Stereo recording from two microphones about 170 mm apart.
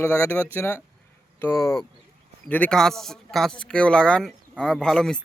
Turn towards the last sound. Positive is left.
turn(degrees=5)  # may be behind; listen again after turning